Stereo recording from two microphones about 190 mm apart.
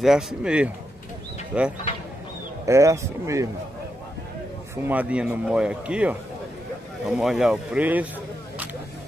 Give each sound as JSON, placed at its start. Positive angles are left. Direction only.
{"t": 0.0, "sound": "a man's voice", "side_deg": 0}
{"t": 4.8, "sound": "a man's voice", "side_deg": -10}